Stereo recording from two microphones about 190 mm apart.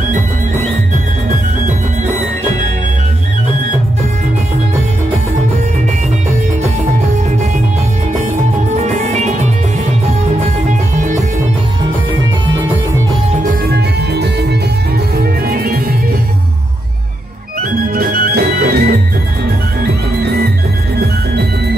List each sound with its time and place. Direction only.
8.7 s music: 35° right (ahead or behind)
10.7 s music: 40° right (ahead or behind)
13.4 s music: 50° right (ahead or behind)
17.8 s music: 50° right (ahead or behind)